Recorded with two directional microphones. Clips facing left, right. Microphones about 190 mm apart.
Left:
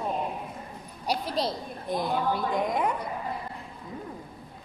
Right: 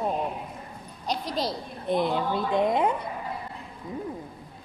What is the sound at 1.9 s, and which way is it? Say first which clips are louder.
A woman's voice: right 2 dB; 25° right (ahead or behind).